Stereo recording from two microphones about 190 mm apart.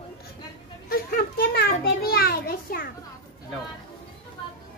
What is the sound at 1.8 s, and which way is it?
A child's voice, 55° left (ahead or behind).